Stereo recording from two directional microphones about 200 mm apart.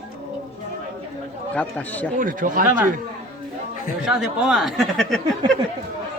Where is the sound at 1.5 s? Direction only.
5° left (ahead or behind).